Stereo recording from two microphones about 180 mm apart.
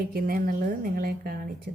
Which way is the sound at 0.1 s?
55° right (ahead or behind).